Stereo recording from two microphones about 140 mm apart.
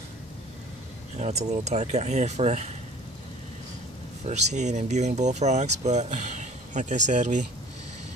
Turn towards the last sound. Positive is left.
turn(degrees=-60)  # may be behind; listen again after turning